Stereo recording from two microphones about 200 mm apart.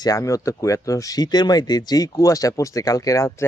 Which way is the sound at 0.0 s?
15° left (ahead or behind).